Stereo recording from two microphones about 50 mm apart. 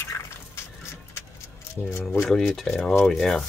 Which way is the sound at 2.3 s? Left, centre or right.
Centre.